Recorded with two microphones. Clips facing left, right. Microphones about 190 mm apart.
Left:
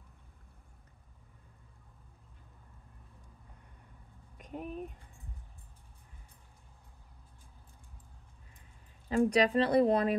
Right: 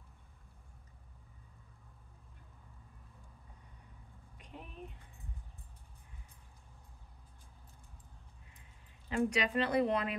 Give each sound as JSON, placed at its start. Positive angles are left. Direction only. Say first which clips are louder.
{"t": 4.4, "sound": "speech", "louder": "left 9 dB", "side_deg": 45}
{"t": 9.1, "sound": "speech", "louder": "left 6 dB", "side_deg": 35}